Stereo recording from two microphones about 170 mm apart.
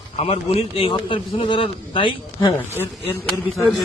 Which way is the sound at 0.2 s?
35° left (ahead or behind).